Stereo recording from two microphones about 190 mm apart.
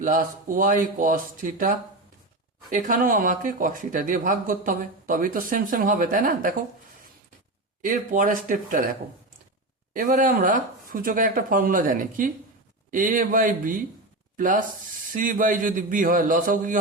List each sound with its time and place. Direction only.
0.0 s speech: 45° right (ahead or behind)
7.8 s speech: 45° right (ahead or behind)
9.9 s speech: 45° right (ahead or behind)